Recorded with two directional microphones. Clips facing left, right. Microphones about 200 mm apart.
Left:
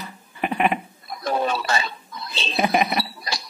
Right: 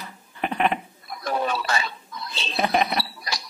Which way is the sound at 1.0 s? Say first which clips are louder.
Left 2 dB; 25° left (ahead or behind).